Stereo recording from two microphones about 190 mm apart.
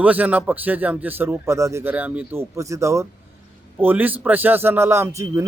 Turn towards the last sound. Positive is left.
turn(degrees=-15)  # may be behind; listen again after turning